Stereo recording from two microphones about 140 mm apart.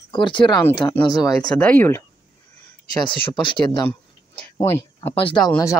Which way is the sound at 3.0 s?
35° left (ahead or behind).